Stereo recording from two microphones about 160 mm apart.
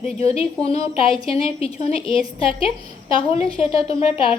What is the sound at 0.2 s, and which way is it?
A woman's voice, 35° left (ahead or behind).